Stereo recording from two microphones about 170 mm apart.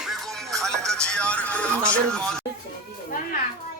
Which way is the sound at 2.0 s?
5° left (ahead or behind).